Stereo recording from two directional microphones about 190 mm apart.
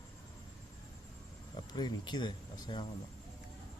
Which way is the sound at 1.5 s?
25° left (ahead or behind).